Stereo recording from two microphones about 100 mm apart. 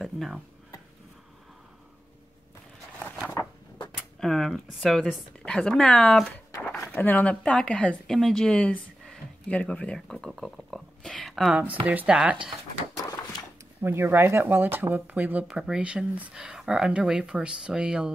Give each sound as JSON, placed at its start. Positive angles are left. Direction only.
{"t": 0.0, "sound": "a sound", "side_deg": 0}
{"t": 4.2, "sound": "speech", "side_deg": 5}
{"t": 11.8, "sound": "speech", "side_deg": -15}
{"t": 13.8, "sound": "speech", "side_deg": -25}